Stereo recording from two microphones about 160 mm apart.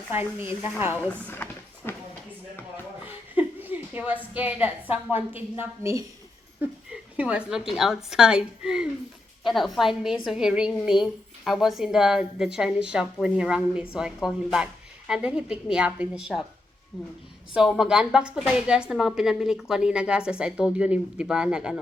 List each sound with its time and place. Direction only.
0.1 s a woman's voice: 15° right (ahead or behind)
1.3 s drawer open or close: 15° left (ahead or behind)
3.3 s a sound: 10° right (ahead or behind)
5.1 s a woman's voice: 10° right (ahead or behind)
17.5 s a woman's voice: 5° right (ahead or behind)